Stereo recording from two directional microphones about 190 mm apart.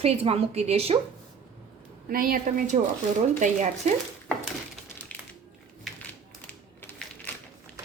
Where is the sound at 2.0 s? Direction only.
50° right (ahead or behind).